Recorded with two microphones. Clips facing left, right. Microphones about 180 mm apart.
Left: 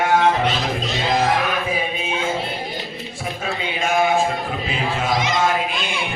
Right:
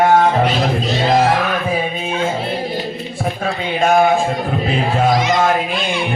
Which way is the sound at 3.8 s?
55° right (ahead or behind).